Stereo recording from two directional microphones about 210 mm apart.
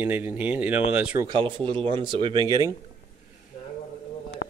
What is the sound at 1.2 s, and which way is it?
Speech, 25° right (ahead or behind).